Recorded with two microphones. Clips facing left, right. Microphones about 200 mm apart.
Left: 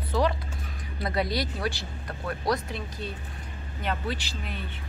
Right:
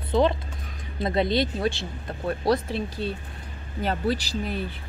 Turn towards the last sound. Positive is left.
turn(degrees=-40)  # may be behind; listen again after turning